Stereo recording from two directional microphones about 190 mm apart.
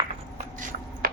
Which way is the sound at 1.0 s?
50° right (ahead or behind).